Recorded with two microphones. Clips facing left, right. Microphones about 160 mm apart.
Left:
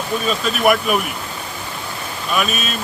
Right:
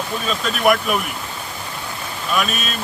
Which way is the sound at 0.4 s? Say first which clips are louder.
Even; 5° left (ahead or behind).